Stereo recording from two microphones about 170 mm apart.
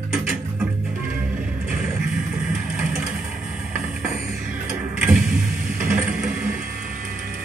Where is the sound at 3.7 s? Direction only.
10° right (ahead or behind).